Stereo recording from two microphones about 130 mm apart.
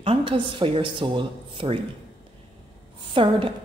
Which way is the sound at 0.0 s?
45° right (ahead or behind).